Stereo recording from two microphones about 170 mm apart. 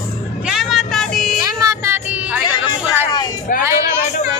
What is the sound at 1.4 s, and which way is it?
Music, 20° right (ahead or behind).